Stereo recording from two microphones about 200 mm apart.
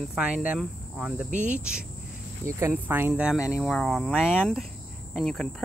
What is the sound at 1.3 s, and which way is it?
Speech, 40° right (ahead or behind).